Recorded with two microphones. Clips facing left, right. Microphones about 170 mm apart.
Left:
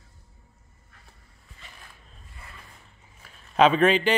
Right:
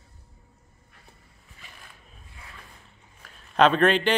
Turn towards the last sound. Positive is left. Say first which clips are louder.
# left 1 dB
turn(degrees=5)  # may be behind; listen again after turning